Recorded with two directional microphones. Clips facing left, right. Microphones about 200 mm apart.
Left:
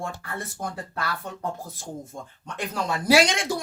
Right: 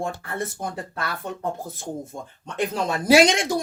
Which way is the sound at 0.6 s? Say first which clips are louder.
Right 2 dB; 20° right (ahead or behind).